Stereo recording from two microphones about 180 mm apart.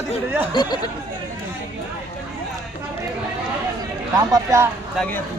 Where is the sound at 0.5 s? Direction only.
25° left (ahead or behind).